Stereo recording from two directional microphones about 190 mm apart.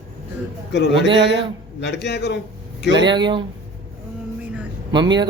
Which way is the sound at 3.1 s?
25° right (ahead or behind).